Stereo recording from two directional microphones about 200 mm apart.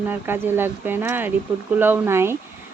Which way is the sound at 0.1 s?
10° right (ahead or behind).